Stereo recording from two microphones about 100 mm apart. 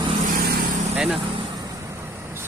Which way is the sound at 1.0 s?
5° right (ahead or behind).